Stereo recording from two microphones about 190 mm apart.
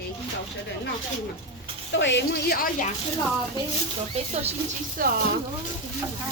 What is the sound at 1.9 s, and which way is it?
A woman's voice, 70° left (ahead or behind).